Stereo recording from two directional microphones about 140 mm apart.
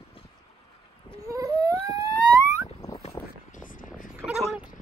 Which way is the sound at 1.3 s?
25° right (ahead or behind).